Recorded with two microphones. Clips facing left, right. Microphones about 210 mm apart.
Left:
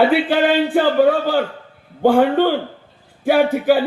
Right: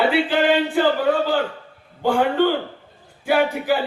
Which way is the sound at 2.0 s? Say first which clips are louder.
Left 4 dB; 50° left (ahead or behind).